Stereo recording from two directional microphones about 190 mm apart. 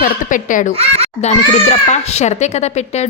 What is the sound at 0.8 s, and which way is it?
Speech, 30° right (ahead or behind).